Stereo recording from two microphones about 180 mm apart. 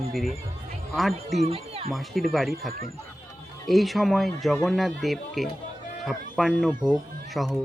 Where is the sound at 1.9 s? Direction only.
Centre (ahead or behind).